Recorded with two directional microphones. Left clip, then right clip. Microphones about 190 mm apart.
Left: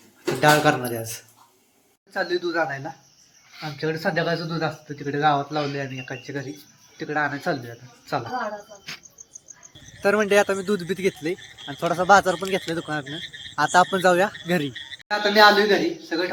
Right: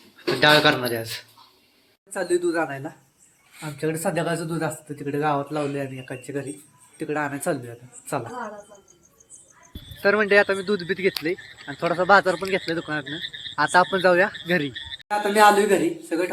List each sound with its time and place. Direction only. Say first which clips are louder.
0.4 s speech: right 1 dB; 5° left (ahead or behind)
2.1 s speech: right 1 dB; 15° right (ahead or behind)
10.0 s speech: right 1 dB; 10° left (ahead or behind)
13.2 s speech: right 3 dB; 45° left (ahead or behind)
13.6 s speech: even; 10° left (ahead or behind)
14.7 s frog: right 1 dB; 50° left (ahead or behind)
15.0 s a man's voice: left 1 dB; 15° right (ahead or behind)